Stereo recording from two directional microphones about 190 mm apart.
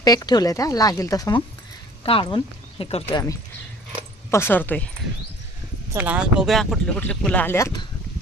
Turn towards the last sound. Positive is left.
turn(degrees=20)  # may be behind; listen again after turning